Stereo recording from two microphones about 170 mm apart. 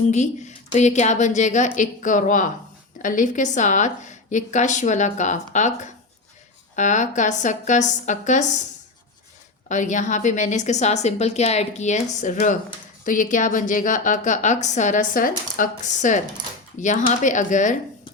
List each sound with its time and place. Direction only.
0.1 s a woman's voice: 45° left (ahead or behind)
9.6 s a woman's voice: 45° left (ahead or behind)